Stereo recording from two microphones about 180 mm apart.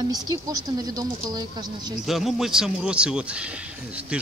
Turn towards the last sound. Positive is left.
turn(degrees=-5)  # may be behind; listen again after turning